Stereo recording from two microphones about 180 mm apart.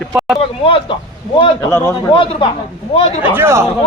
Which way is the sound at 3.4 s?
15° right (ahead or behind).